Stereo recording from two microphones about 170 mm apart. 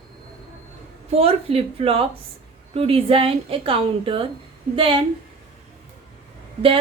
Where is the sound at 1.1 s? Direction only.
35° right (ahead or behind).